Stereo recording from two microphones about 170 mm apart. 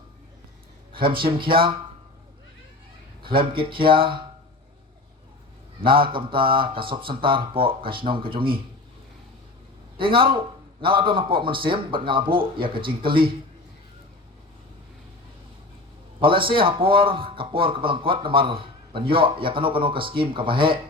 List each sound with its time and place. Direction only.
0.9 s speech: 30° right (ahead or behind)
3.2 s speech: 30° right (ahead or behind)
5.8 s speech: 30° right (ahead or behind)
10.0 s speech: 30° right (ahead or behind)
16.2 s speech: 30° right (ahead or behind)